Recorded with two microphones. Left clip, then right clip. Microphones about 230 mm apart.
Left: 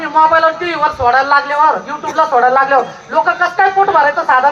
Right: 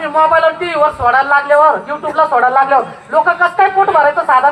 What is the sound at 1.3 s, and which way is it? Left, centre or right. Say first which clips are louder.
A man's voice: right 2 dB; right.